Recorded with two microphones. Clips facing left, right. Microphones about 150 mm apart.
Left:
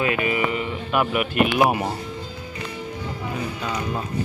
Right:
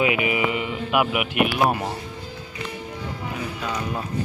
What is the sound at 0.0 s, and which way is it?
Speech, 15° right (ahead or behind).